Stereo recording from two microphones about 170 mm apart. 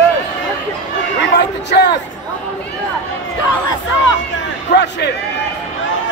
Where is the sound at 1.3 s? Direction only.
80° left.